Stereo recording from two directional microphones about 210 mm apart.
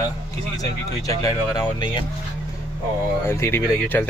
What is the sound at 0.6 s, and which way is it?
Speech, 15° left (ahead or behind).